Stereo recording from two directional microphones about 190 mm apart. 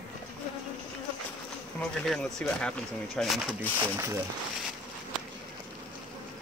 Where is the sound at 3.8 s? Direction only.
15° right (ahead or behind).